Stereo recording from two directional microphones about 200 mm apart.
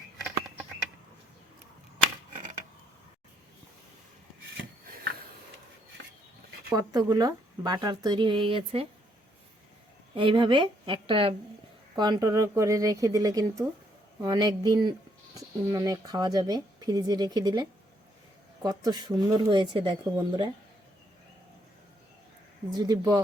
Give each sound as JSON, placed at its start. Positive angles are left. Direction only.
{"t": 6.7, "sound": "speech", "side_deg": -20}
{"t": 10.2, "sound": "speech", "side_deg": -25}
{"t": 22.7, "sound": "speech", "side_deg": -20}